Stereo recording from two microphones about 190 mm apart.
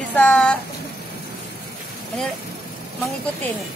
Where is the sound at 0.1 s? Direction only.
5° left (ahead or behind).